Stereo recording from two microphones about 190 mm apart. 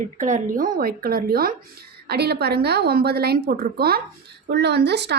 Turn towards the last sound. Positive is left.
turn(degrees=-60)  # may be behind; listen again after turning